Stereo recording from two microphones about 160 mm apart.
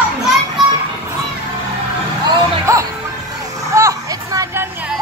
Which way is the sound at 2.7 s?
20° right (ahead or behind).